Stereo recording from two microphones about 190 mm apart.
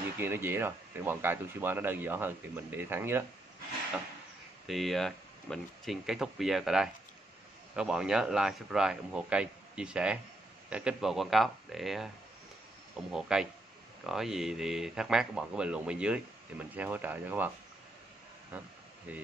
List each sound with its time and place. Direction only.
0.2 s speech: 10° right (ahead or behind)
4.6 s a man's voice: centre (ahead or behind)
13.1 s a man's voice: 5° right (ahead or behind)
19.1 s speech: 5° right (ahead or behind)